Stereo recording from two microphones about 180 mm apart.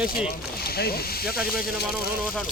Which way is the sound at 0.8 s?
60° left (ahead or behind).